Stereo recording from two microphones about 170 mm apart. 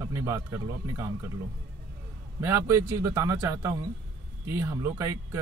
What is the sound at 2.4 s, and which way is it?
Speech, 15° right (ahead or behind).